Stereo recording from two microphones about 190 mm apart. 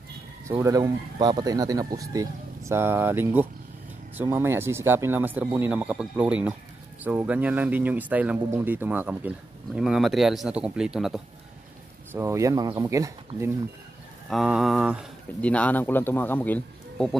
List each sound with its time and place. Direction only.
0.5 s speech: 15° right (ahead or behind)
12.1 s speech: 15° right (ahead or behind)
14.3 s a man's voice: centre (ahead or behind)